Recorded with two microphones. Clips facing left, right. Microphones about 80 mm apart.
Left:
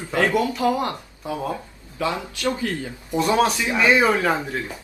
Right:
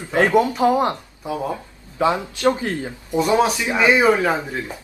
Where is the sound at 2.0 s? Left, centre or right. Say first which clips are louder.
Right 6 dB; right.